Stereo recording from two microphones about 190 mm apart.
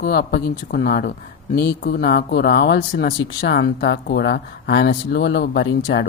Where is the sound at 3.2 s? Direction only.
65° left (ahead or behind).